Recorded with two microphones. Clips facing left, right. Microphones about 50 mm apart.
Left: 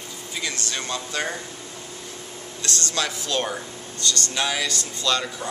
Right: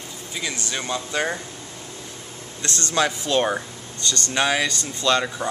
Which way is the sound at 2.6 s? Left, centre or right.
Right.